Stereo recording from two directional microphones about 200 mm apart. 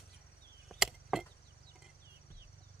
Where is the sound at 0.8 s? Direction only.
Centre (ahead or behind).